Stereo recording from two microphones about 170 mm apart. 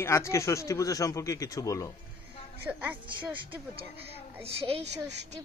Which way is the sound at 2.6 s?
10° right (ahead or behind).